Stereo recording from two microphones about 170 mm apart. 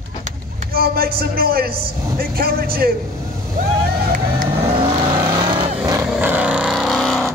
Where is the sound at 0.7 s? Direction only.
60° right (ahead or behind).